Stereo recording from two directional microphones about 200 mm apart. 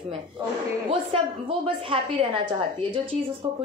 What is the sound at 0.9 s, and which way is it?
A woman's voice, 25° right (ahead or behind).